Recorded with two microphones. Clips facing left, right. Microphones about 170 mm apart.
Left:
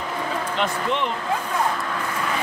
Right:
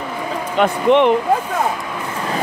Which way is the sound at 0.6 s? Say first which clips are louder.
Right 13 dB; 60° right (ahead or behind).